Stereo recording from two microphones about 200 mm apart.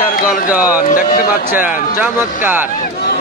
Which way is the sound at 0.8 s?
45° left (ahead or behind).